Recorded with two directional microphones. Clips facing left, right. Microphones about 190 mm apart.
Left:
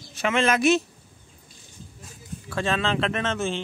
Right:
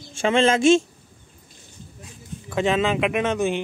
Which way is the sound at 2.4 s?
20° right (ahead or behind).